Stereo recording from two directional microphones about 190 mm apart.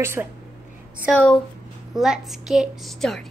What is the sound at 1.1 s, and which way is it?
A woman's voice, 5° left (ahead or behind).